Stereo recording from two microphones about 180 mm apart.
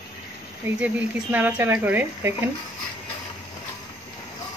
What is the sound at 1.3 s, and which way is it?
Speech, 10° right (ahead or behind).